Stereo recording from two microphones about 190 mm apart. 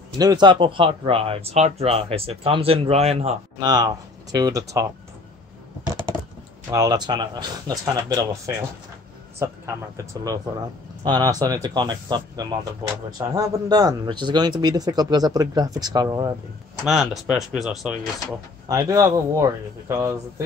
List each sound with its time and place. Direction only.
0.2 s speech: 20° right (ahead or behind)
3.5 s speech: 20° right (ahead or behind)
6.7 s speech: 20° right (ahead or behind)
9.4 s speech: 15° right (ahead or behind)
16.8 s speech: centre (ahead or behind)
18.7 s speech: 15° right (ahead or behind)